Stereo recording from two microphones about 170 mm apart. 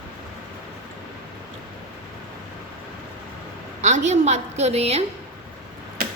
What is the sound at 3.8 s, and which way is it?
A woman's voice, 45° right (ahead or behind).